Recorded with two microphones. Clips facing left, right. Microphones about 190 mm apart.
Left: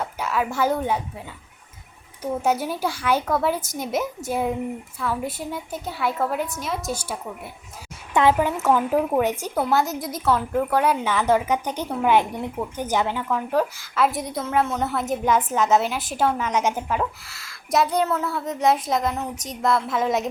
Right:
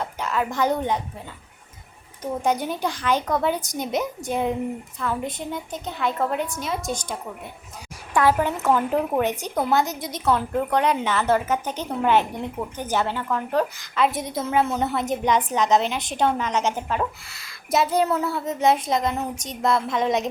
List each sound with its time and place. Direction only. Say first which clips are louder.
0.0 s a woman's voice: left 1 dB; 10° left (ahead or behind)
2.2 s a woman's voice: left 1 dB; 5° left (ahead or behind)
8.1 s a woman's voice: left 1 dB; 20° left (ahead or behind)
8.4 s a woman's voice: left 1 dB; 10° left (ahead or behind)